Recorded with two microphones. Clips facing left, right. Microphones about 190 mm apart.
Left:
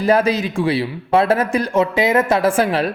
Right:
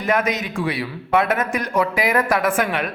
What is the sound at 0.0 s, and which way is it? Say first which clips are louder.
A man's voice: left 5 dB; 30° left (ahead or behind).